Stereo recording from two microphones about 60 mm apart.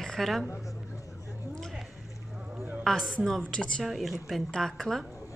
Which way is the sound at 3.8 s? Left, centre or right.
Centre.